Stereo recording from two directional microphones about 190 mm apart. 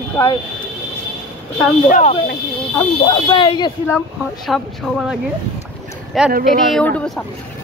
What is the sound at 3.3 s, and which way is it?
Speech, 25° left (ahead or behind).